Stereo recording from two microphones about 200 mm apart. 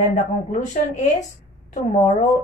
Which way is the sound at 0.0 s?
35° left (ahead or behind).